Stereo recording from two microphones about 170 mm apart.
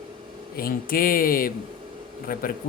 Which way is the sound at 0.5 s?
60° left (ahead or behind).